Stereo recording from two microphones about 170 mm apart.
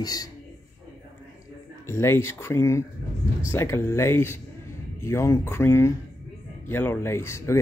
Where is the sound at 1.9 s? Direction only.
15° left (ahead or behind).